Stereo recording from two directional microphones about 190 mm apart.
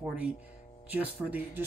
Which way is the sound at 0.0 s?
5° right (ahead or behind).